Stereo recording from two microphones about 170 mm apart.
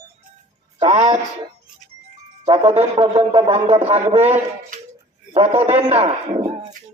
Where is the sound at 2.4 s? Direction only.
35° right (ahead or behind).